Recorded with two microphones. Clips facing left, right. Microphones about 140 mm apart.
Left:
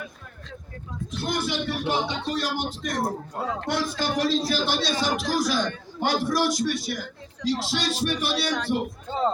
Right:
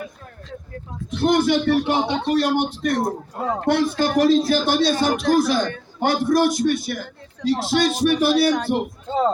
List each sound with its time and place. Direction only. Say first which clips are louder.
1.1 s speech: right 10 dB; 55° right (ahead or behind)
3.4 s a man's voice: right 8 dB; 50° right (ahead or behind)